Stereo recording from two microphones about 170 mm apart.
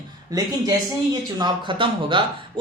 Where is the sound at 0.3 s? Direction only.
20° right (ahead or behind).